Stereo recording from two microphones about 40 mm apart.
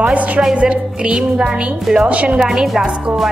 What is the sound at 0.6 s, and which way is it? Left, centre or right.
A woman's voice, right.